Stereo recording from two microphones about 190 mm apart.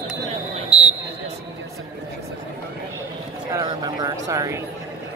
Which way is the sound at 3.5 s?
20° right (ahead or behind).